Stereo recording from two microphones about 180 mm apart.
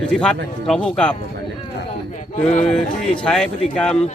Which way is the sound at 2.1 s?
40° left (ahead or behind).